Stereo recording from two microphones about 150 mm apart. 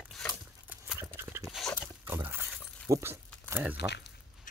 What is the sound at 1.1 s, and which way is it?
Dog, 15° right (ahead or behind).